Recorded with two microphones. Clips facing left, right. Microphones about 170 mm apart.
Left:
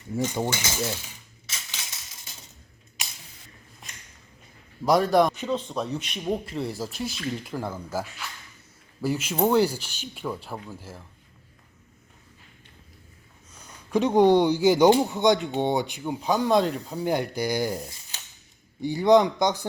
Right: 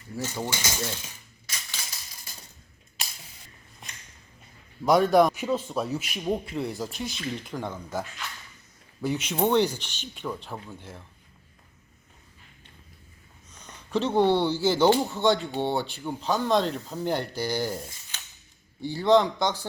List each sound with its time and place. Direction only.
0.3 s speech: 15° left (ahead or behind)
1.5 s crushing: 5° left (ahead or behind)
3.8 s a sound: centre (ahead or behind)
4.9 s a man's voice: centre (ahead or behind)
13.5 s speech: 10° left (ahead or behind)